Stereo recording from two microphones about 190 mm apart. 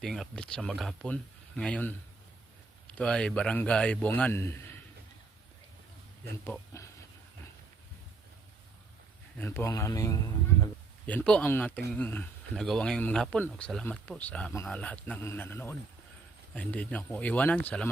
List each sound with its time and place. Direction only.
0.0 s speech: 5° left (ahead or behind)
6.4 s speech: 10° left (ahead or behind)
9.4 s speech: 10° left (ahead or behind)
11.0 s speech: 5° left (ahead or behind)